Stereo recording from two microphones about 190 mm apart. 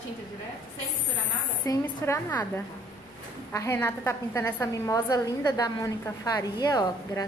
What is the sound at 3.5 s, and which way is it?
A woman's voice, 15° left (ahead or behind).